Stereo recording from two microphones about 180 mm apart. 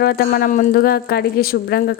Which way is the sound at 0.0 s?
55° left (ahead or behind).